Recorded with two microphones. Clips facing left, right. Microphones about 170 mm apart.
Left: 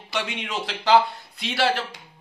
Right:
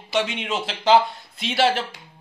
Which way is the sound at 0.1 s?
25° right (ahead or behind).